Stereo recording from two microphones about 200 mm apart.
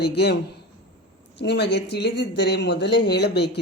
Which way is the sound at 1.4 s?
55° left (ahead or behind).